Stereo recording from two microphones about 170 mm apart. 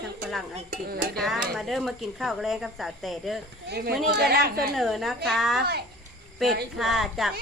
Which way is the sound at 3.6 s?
70° right (ahead or behind).